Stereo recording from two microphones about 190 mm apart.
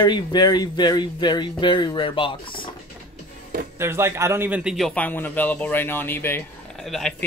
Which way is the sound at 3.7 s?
15° right (ahead or behind).